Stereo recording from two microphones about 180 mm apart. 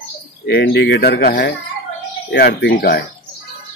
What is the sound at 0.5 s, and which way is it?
Speech, 65° left (ahead or behind).